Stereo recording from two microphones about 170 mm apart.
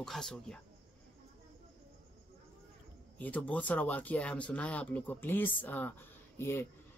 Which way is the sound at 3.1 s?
10° left (ahead or behind).